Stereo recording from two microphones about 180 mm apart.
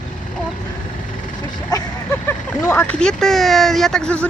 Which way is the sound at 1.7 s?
20° left (ahead or behind).